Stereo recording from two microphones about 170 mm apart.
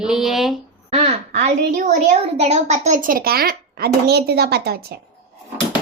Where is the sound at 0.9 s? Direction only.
35° right (ahead or behind); by 4.9 s 70° right (ahead or behind).